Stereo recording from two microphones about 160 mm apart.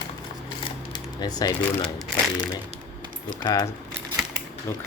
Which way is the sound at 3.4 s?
20° left (ahead or behind).